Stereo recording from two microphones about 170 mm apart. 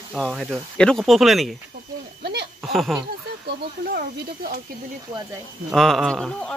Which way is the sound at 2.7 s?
Centre (ahead or behind).